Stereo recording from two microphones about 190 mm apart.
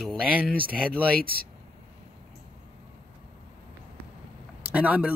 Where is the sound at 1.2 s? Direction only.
50° right (ahead or behind).